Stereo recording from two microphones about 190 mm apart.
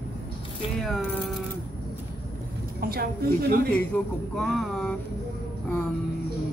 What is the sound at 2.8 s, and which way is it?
Speech, 55° right (ahead or behind).